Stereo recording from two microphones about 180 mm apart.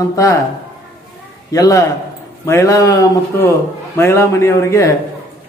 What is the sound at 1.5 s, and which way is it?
A man's voice, 20° left (ahead or behind).